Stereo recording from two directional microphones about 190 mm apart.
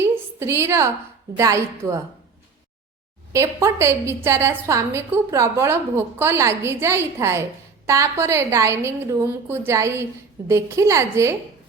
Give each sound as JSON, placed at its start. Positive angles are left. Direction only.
{"t": 0.0, "sound": "a sound", "side_deg": -15}
{"t": 1.3, "sound": "a woman's voice", "side_deg": -15}
{"t": 3.3, "sound": "a woman's voice", "side_deg": -15}